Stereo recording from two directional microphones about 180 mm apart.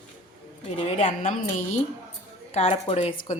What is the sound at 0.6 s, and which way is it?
Speech, 35° left (ahead or behind).